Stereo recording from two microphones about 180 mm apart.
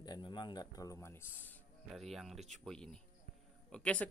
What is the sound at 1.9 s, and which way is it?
Speech, centre (ahead or behind).